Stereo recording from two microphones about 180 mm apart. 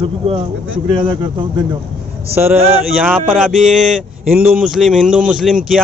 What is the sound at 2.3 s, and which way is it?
Speech, 10° right (ahead or behind).